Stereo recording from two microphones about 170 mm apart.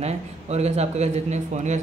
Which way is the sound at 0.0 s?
40° right (ahead or behind).